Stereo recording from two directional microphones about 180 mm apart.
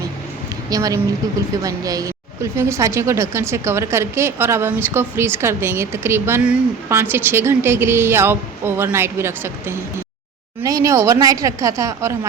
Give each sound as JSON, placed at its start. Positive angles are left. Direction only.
{"t": 0.7, "sound": "a woman's voice", "side_deg": -20}